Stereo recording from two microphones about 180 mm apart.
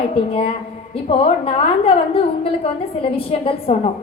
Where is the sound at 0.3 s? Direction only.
35° left (ahead or behind).